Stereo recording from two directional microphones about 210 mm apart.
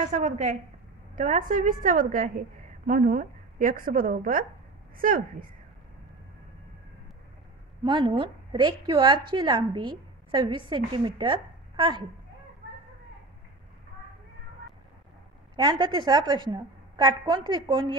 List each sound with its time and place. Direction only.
0.0 s a woman's voice: 35° right (ahead or behind)
7.8 s a woman's voice: 20° right (ahead or behind)
15.5 s a woman's voice: 20° right (ahead or behind)